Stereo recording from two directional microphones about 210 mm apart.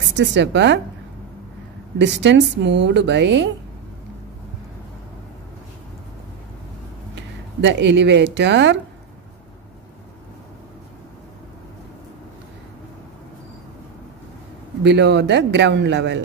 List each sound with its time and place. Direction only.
0.1 s a woman's voice: 60° right (ahead or behind)
2.0 s a woman's voice: 55° right (ahead or behind)
7.2 s speech: 60° right (ahead or behind)
14.8 s a woman's voice: 55° right (ahead or behind)